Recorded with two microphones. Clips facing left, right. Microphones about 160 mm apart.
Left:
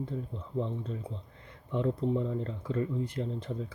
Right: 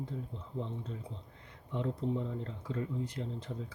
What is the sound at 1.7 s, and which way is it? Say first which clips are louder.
Speech: left 5 dB; 60° left (ahead or behind).